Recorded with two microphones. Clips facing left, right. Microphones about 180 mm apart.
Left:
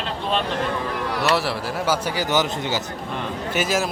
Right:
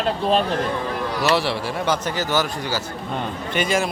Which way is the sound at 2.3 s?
20° left (ahead or behind).